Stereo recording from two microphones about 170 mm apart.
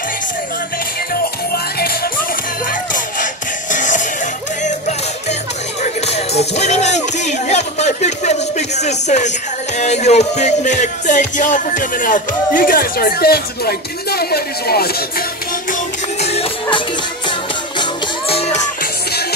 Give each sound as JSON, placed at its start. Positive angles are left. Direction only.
{"t": 3.7, "sound": "music", "side_deg": 50}
{"t": 5.8, "sound": "music", "side_deg": 40}
{"t": 16.2, "sound": "music", "side_deg": 35}
{"t": 18.3, "sound": "music", "side_deg": 40}